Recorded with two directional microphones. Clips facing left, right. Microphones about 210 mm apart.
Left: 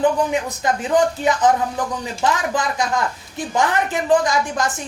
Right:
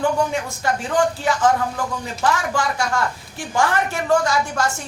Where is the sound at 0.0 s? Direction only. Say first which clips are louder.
Left 2 dB; 20° left (ahead or behind).